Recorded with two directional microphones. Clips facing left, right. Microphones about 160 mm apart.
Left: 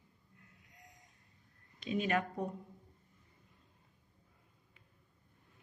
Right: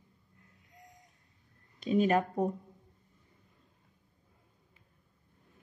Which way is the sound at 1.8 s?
40° right (ahead or behind).